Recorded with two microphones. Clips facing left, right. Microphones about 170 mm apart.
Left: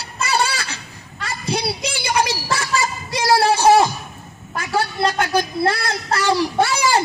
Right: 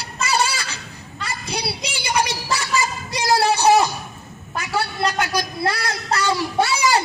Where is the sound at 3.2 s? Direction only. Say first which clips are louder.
Left 2 dB; 50° left (ahead or behind).